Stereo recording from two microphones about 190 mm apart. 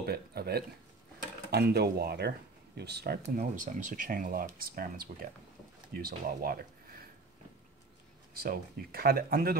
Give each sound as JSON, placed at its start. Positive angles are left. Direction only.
{"t": 0.0, "sound": "speech", "side_deg": -55}
{"t": 3.2, "sound": "speech", "side_deg": -45}
{"t": 8.4, "sound": "speech", "side_deg": -55}